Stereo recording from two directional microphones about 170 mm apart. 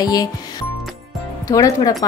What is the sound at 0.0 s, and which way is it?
Speech, 20° left (ahead or behind).